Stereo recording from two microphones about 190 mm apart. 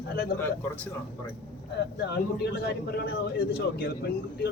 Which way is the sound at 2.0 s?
60° left (ahead or behind).